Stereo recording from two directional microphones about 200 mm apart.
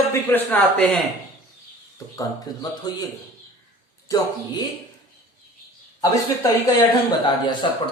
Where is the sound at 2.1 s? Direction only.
20° left (ahead or behind).